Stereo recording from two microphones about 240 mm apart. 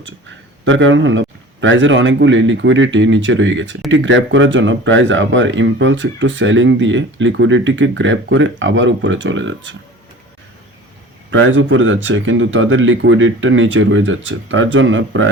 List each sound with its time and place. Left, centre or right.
0.0 s speech: right
11.3 s speech: right